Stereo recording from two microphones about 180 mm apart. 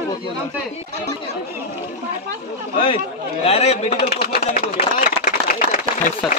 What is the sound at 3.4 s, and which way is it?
Speech, 35° left (ahead or behind).